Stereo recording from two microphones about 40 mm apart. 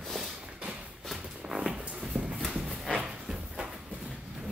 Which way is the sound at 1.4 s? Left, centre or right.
Centre.